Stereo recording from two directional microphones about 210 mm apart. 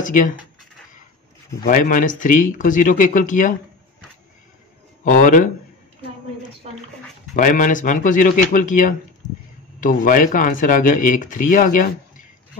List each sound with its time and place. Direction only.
0.0 s speech: 40° left (ahead or behind)
1.6 s speech: 40° left (ahead or behind)
5.1 s speech: 40° left (ahead or behind)
6.6 s speech: 30° right (ahead or behind)
7.3 s speech: 40° left (ahead or behind)